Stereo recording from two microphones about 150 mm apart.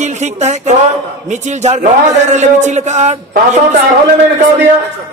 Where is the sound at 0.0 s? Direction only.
50° right (ahead or behind).